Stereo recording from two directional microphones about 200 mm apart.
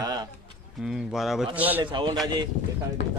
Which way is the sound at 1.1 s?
Centre (ahead or behind).